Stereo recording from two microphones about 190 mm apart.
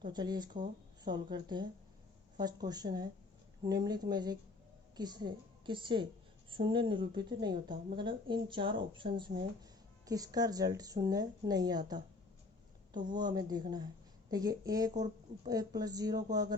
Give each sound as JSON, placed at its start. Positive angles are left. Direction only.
{"t": 0.0, "sound": "speech", "side_deg": -20}
{"t": 12.9, "sound": "speech", "side_deg": -25}